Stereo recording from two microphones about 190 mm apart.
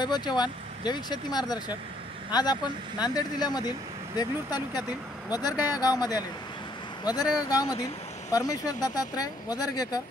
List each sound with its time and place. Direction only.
0.0 s speech: 20° left (ahead or behind)
5.3 s speech: 20° left (ahead or behind)